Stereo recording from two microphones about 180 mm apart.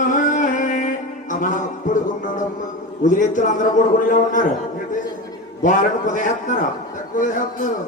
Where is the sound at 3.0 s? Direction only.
45° left (ahead or behind).